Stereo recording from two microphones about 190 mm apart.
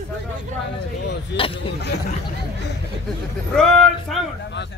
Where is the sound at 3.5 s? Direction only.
5° left (ahead or behind).